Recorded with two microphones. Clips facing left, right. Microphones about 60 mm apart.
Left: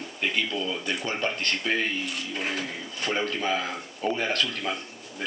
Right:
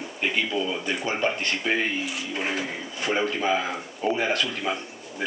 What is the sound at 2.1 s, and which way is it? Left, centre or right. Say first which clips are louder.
A man's voice: right 2 dB; centre.